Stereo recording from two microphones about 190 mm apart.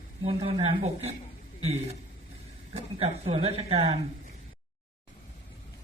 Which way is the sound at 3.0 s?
30° right (ahead or behind).